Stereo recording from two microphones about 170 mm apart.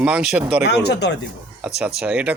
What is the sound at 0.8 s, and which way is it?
Speech, 80° left.